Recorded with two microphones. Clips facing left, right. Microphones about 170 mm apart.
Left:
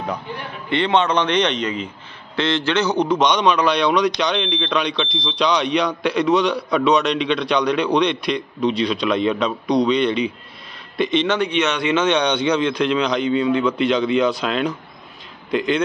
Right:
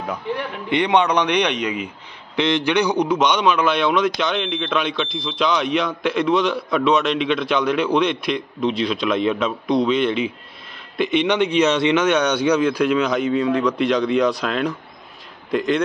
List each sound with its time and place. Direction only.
0.7 s a man's voice: 15° right (ahead or behind)
11.5 s speech: 30° right (ahead or behind)
11.9 s a man's voice: 10° right (ahead or behind)